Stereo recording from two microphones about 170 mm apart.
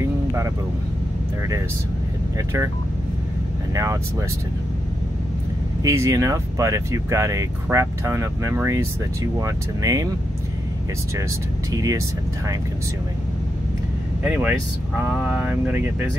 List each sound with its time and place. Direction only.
0.0 s vehicle: 15° right (ahead or behind)
2.3 s speech: 20° right (ahead or behind)
3.7 s speech: 20° right (ahead or behind)
5.8 s speech: 20° right (ahead or behind)
11.7 s speech: 20° right (ahead or behind)
14.2 s speech: 5° right (ahead or behind)